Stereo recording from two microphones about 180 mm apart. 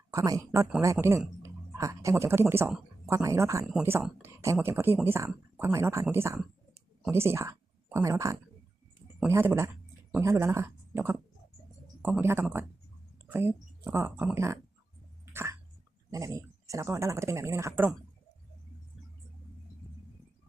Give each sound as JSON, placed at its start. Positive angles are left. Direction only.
{"t": 0.1, "sound": "speech", "side_deg": -20}
{"t": 3.7, "sound": "speech", "side_deg": -5}
{"t": 15.3, "sound": "cough", "side_deg": -15}
{"t": 16.1, "sound": "speech", "side_deg": -20}